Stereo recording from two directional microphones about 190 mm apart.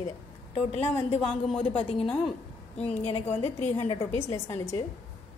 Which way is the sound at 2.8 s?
30° left (ahead or behind).